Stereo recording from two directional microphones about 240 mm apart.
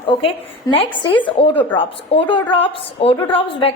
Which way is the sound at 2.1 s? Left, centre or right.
Centre.